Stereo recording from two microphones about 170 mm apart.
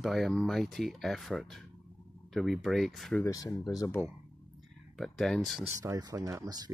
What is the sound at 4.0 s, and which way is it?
Speech, 10° right (ahead or behind).